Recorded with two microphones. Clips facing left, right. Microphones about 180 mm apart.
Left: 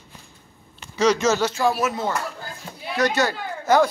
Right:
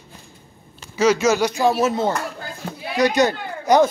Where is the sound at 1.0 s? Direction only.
5° right (ahead or behind).